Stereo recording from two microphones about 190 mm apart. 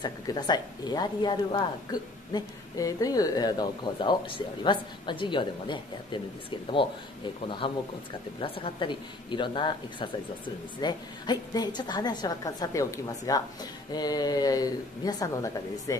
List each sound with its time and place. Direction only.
0.0 s speech: 20° left (ahead or behind)
7.4 s speech: 25° left (ahead or behind)